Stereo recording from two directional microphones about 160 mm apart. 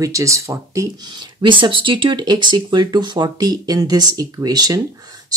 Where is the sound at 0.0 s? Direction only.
20° right (ahead or behind).